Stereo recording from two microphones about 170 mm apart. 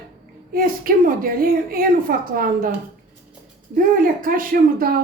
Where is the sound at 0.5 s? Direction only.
55° right (ahead or behind).